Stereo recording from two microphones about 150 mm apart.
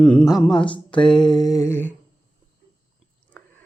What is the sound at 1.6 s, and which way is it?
Speech, 15° left (ahead or behind).